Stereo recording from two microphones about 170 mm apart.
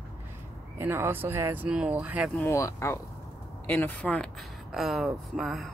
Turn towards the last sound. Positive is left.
turn(degrees=0)  # may be behind; listen again after turning